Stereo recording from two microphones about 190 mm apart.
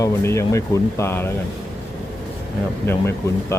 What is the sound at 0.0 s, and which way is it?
Speech, 15° left (ahead or behind).